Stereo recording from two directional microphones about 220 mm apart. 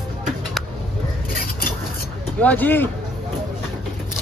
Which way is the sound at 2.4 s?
10° left (ahead or behind).